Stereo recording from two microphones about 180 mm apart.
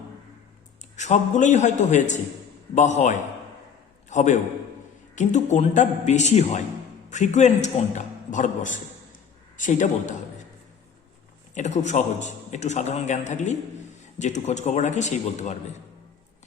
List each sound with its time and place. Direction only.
0.9 s a man's voice: 40° left (ahead or behind)
11.5 s a man's voice: 40° left (ahead or behind)